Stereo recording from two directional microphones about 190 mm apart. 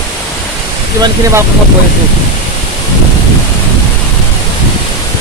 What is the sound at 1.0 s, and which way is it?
Speech, 15° right (ahead or behind).